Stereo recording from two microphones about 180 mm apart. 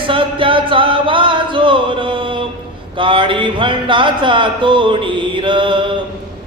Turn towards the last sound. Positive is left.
turn(degrees=-25)  # may be behind; listen again after turning